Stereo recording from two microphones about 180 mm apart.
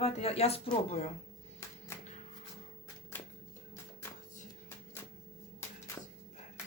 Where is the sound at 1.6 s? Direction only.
15° left (ahead or behind).